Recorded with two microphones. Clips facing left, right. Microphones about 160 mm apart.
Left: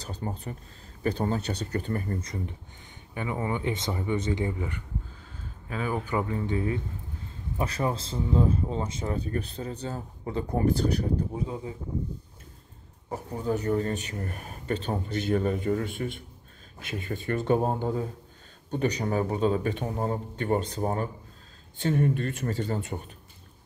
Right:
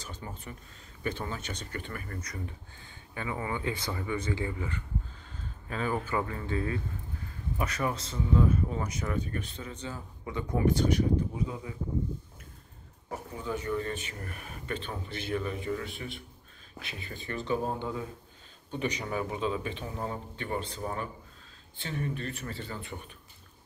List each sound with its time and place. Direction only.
0.0 s speech: 35° left (ahead or behind); by 6.8 s 20° left (ahead or behind)
7.5 s speech: 30° left (ahead or behind)
13.3 s speech: 40° left (ahead or behind)